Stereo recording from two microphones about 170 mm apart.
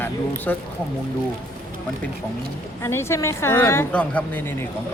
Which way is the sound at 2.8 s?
15° left (ahead or behind).